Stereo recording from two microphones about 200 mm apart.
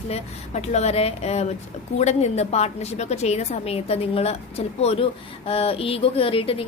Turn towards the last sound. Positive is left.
turn(degrees=30)  # may be behind; listen again after turning